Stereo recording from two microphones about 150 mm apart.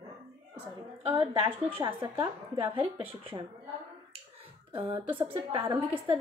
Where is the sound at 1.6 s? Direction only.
35° right (ahead or behind).